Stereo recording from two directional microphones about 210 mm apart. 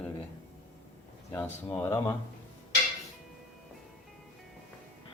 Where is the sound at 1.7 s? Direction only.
10° left (ahead or behind).